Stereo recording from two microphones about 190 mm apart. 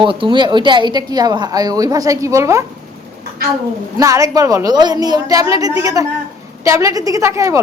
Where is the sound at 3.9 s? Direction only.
15° right (ahead or behind).